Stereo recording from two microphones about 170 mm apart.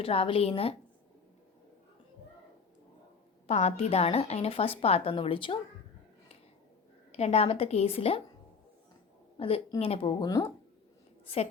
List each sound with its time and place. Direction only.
0.0 s a woman's voice: 35° left (ahead or behind)
3.4 s a woman's voice: 35° left (ahead or behind)
7.1 s a woman's voice: 35° left (ahead or behind)
9.4 s a woman's voice: 35° left (ahead or behind)